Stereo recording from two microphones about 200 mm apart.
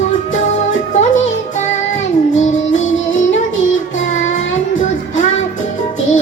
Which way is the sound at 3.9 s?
35° left (ahead or behind).